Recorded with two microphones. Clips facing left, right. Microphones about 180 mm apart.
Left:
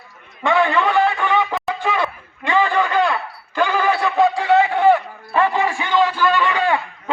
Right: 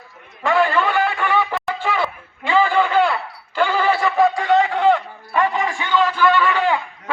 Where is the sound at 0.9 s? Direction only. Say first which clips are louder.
Left 2 dB; 20° left (ahead or behind).